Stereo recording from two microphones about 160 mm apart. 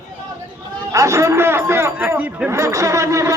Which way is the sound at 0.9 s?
20° right (ahead or behind).